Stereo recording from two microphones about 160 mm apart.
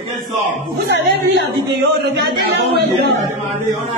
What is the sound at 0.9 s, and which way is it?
Speech, 90° right.